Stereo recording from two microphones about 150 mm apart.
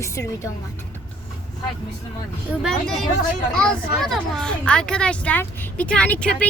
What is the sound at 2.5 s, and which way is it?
Speech, centre (ahead or behind).